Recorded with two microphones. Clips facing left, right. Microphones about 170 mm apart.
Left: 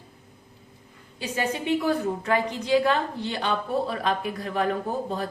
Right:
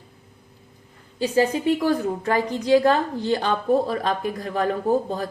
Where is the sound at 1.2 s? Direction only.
35° right (ahead or behind).